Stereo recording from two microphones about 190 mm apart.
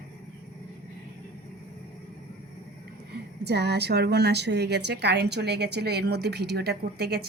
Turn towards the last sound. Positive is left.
turn(degrees=-55)  # may be behind; listen again after turning